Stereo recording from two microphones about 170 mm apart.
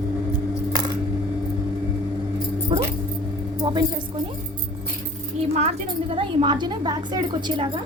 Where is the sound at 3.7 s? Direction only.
25° right (ahead or behind).